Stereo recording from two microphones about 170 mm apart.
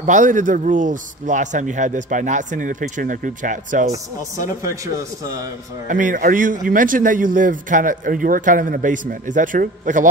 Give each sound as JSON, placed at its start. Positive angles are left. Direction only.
{"t": 0.0, "sound": "speech", "side_deg": -45}
{"t": 5.9, "sound": "speech", "side_deg": -50}